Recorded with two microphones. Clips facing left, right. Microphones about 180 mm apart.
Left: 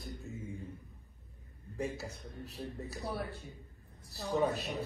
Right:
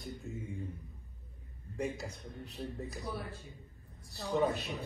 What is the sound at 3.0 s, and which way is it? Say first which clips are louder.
Speech: left 6 dB; 70° left (ahead or behind).